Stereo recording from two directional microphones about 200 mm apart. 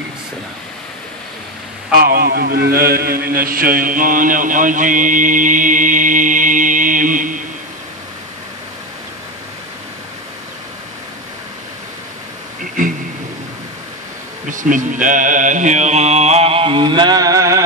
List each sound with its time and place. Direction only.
2.0 s speech: 50° right (ahead or behind)
14.5 s mantra: 40° right (ahead or behind); by 17.6 s 15° right (ahead or behind)